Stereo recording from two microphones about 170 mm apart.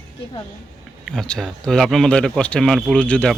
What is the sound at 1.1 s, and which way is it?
Speech, 5° left (ahead or behind).